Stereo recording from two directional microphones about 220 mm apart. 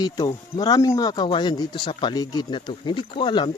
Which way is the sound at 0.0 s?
20° left (ahead or behind).